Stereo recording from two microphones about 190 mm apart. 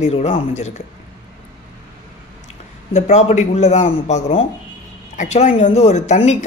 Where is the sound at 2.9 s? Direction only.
35° left (ahead or behind).